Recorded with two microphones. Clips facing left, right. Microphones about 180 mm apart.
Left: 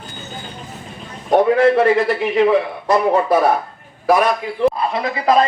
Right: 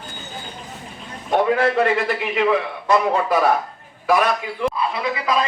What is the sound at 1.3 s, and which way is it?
A man's voice, 40° left (ahead or behind).